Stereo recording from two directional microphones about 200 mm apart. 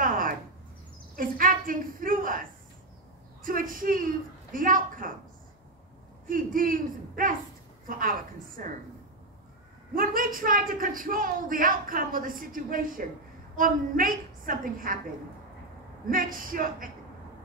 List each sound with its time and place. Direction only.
0.0 s a sound: 45° right (ahead or behind)
1.1 s speech: 45° right (ahead or behind)
3.4 s speech: 45° right (ahead or behind)
6.2 s speech: 45° right (ahead or behind)
9.9 s speech: 45° right (ahead or behind)
16.1 s speech: 45° right (ahead or behind)